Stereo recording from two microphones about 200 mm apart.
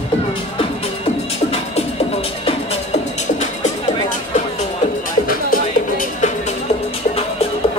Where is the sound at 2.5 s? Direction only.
35° left (ahead or behind).